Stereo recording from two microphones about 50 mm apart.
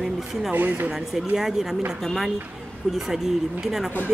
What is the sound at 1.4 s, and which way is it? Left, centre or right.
Speech, centre.